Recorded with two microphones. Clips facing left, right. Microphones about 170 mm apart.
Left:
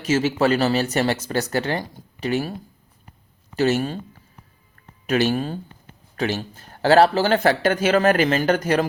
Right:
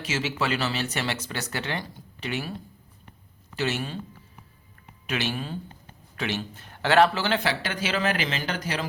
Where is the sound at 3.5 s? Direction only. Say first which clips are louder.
Left 9 dB; 40° left (ahead or behind).